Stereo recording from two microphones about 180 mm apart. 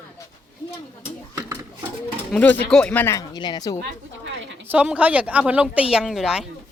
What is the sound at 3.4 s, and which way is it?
Speech, 20° left (ahead or behind).